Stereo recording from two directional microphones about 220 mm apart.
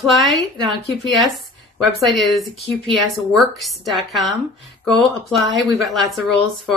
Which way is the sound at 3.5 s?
Centre (ahead or behind).